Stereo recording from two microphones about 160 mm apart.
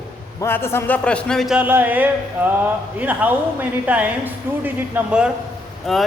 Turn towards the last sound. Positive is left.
turn(degrees=0)  # may be behind; listen again after turning